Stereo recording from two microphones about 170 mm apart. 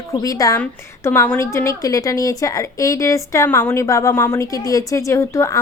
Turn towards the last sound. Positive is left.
turn(degrees=15)  # may be behind; listen again after turning